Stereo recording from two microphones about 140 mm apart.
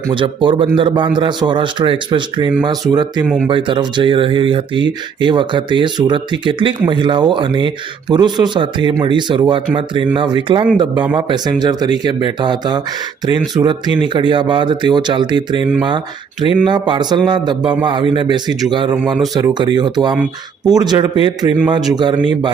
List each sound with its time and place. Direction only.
0.1 s speech: 35° right (ahead or behind)
16.6 s a man's voice: 35° right (ahead or behind)